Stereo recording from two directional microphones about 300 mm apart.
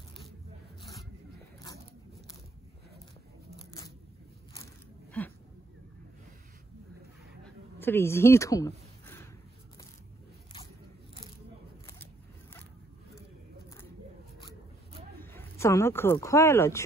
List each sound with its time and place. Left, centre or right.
7.8 s speech: centre
15.1 s speech: centre